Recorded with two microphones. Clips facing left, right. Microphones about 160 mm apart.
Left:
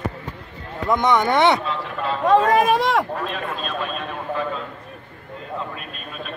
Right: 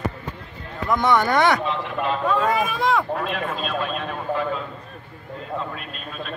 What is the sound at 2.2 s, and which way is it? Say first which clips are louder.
Speech: left 8 dB; 90° left.